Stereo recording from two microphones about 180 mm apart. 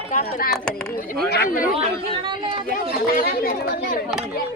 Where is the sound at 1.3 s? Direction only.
55° left (ahead or behind).